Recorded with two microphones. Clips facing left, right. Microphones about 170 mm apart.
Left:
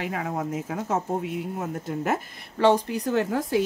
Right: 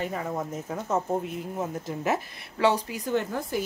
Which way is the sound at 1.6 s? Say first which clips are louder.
Left 1 dB; 60° left (ahead or behind).